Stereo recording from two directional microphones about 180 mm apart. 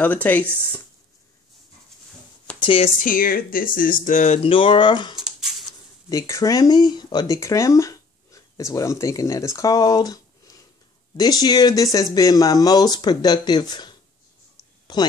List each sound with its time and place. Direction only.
0.0 s speech: 10° left (ahead or behind)
2.6 s speech: 30° left (ahead or behind)
3.0 s speech: 50° left (ahead or behind)
4.4 s speech: 30° left (ahead or behind)
5.1 s a sound: centre (ahead or behind)
6.0 s speech: 20° left (ahead or behind)